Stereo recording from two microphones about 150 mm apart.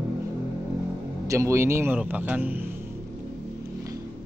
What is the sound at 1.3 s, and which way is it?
A man's voice, 20° right (ahead or behind).